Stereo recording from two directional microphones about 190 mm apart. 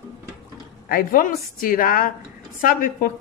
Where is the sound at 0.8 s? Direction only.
50° left (ahead or behind).